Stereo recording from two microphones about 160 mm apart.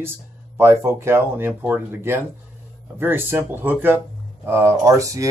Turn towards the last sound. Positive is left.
turn(degrees=-20)  # may be behind; listen again after turning